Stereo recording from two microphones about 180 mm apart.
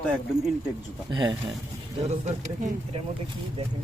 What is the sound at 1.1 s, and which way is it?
Speech, 25° right (ahead or behind).